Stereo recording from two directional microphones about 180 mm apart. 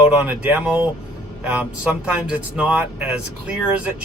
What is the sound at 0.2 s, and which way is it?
Speech, 10° right (ahead or behind).